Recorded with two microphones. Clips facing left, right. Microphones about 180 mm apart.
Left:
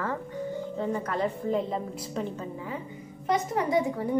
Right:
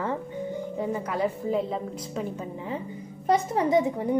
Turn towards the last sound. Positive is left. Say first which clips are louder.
# right 3 dB
turn(degrees=-20)  # may be behind; listen again after turning